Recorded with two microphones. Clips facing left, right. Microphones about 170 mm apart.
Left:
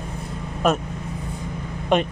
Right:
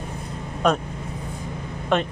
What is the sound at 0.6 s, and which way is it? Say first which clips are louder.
Speech: even; 5° left (ahead or behind).